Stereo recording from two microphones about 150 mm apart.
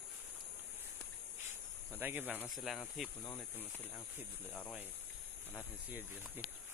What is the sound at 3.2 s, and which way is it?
Speech, 20° left (ahead or behind).